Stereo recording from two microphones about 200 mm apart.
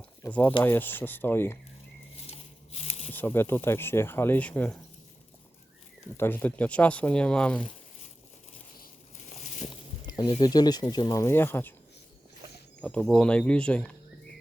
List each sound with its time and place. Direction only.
0.2 s speech: 10° left (ahead or behind)
2.2 s a sound: 30° left (ahead or behind)
3.1 s speech: 10° left (ahead or behind)
6.1 s speech: 10° left (ahead or behind)
8.8 s boat: 40° left (ahead or behind)
10.1 s a sound: 20° left (ahead or behind)
10.4 s speech: 20° left (ahead or behind)
12.8 s speech: 5° left (ahead or behind)